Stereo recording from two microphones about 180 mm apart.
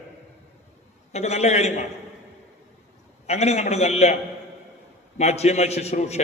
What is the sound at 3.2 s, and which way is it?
Speech, 35° left (ahead or behind).